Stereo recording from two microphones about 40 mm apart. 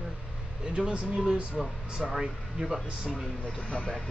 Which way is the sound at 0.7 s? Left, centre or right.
Right.